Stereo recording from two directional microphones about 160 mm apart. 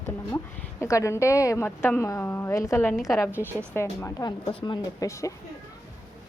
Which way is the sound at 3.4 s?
15° right (ahead or behind).